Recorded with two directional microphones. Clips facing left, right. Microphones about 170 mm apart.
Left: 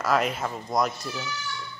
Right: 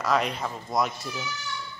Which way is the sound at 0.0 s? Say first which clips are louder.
Left 1 dB; centre (ahead or behind).